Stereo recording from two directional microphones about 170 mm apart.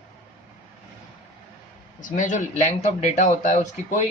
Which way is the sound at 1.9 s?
50° left (ahead or behind).